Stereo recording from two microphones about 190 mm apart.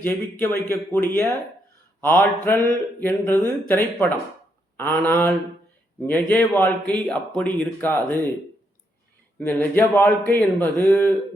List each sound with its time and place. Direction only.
0.0 s speech: 10° left (ahead or behind)
9.4 s speech: 10° left (ahead or behind)